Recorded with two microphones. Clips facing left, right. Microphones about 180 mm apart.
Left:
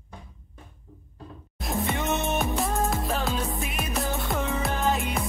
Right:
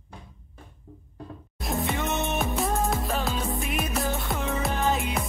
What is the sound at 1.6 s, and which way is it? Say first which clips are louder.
Music: even; centre (ahead or behind).